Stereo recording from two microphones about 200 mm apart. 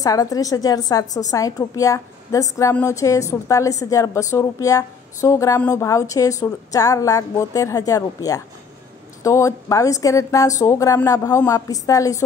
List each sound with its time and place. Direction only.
0.0 s a woman's voice: 15° left (ahead or behind)